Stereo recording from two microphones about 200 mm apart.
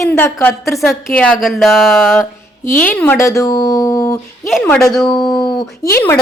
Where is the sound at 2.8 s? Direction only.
10° left (ahead or behind).